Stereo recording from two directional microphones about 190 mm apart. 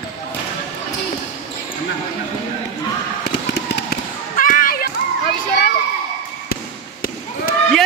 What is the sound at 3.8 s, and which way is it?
Basketball bounce, 50° left (ahead or behind).